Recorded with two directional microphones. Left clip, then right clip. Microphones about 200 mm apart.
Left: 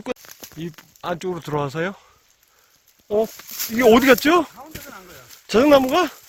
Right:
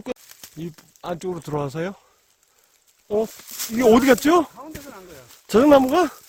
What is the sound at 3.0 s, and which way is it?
Speech, 5° right (ahead or behind).